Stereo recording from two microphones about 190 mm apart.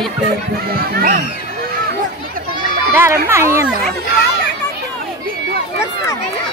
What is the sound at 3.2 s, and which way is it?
Speech, 15° right (ahead or behind).